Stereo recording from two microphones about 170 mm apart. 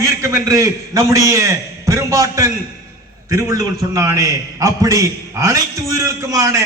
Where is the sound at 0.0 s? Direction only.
20° right (ahead or behind).